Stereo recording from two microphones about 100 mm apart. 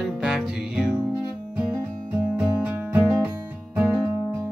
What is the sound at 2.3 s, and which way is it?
Music, 20° right (ahead or behind).